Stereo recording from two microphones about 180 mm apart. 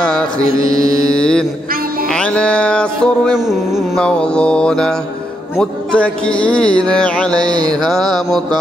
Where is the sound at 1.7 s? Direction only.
55° right (ahead or behind).